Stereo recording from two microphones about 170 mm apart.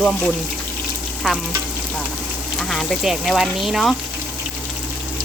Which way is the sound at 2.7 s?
Centre (ahead or behind).